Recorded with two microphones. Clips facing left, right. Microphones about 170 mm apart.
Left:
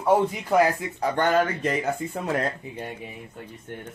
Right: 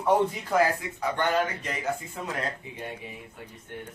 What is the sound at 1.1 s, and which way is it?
Speech, 45° left (ahead or behind).